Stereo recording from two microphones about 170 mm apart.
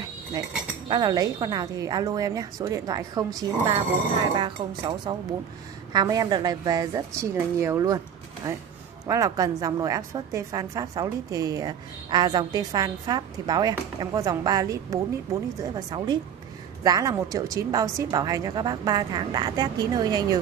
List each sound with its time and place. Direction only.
0.8 s a woman's voice: 25° right (ahead or behind)